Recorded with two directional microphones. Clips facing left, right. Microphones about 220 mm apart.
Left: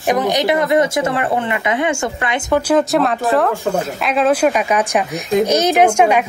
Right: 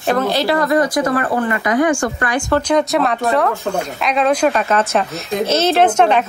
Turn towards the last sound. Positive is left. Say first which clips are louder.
# left 1 dB
turn(degrees=10)  # may be behind; listen again after turning